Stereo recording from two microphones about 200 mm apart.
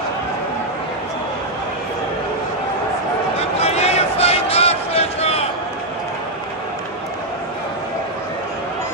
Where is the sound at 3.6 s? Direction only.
30° left (ahead or behind).